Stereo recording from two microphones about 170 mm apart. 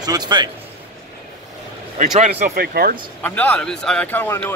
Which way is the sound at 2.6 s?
60° right (ahead or behind).